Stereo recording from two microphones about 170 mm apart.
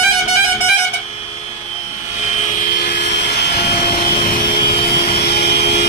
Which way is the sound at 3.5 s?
70° left (ahead or behind).